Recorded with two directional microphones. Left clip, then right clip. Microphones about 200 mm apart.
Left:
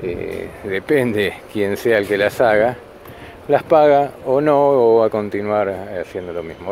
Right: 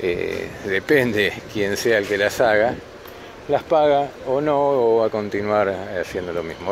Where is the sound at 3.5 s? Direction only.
30° left (ahead or behind).